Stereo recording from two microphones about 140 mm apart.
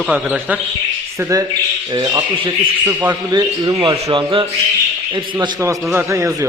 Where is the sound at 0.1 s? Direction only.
10° right (ahead or behind).